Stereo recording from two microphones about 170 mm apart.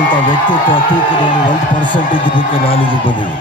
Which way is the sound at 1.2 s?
25° left (ahead or behind).